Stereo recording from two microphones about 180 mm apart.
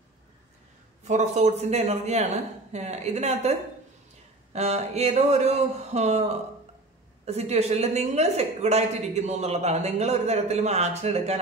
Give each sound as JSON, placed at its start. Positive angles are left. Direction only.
{"t": 1.0, "sound": "a woman's voice", "side_deg": -40}